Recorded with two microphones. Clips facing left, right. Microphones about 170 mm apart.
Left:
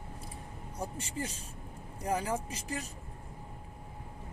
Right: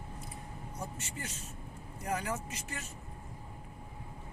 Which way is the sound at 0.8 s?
35° left (ahead or behind).